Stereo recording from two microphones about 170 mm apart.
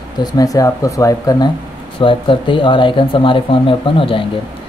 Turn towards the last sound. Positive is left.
turn(degrees=30)  # may be behind; listen again after turning